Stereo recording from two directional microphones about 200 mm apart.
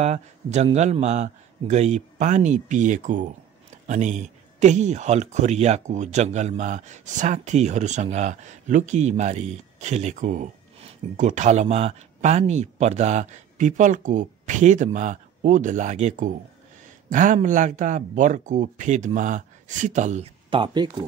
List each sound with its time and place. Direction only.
0.0 s speech: 35° right (ahead or behind)